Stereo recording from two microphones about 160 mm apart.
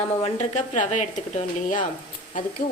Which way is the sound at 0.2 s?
40° left (ahead or behind).